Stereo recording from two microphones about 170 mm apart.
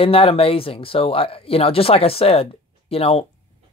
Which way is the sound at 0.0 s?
35° left (ahead or behind).